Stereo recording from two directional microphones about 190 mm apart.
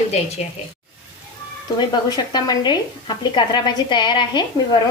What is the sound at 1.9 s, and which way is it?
A woman's voice, 20° left (ahead or behind).